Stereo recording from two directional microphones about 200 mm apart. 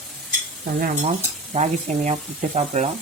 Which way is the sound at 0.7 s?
40° right (ahead or behind).